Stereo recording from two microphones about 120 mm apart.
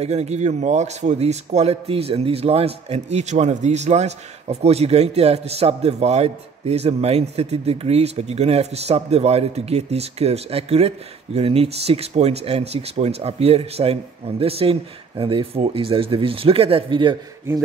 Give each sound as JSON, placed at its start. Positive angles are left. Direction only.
{"t": 0.0, "sound": "a man's voice", "side_deg": -65}